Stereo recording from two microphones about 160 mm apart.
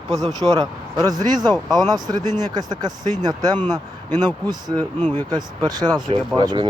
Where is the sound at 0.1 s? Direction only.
Centre (ahead or behind).